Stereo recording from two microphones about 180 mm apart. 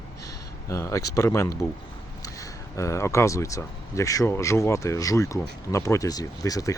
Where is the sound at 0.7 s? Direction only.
15° left (ahead or behind).